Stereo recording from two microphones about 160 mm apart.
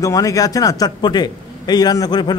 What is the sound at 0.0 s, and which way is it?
A man's voice, 20° left (ahead or behind).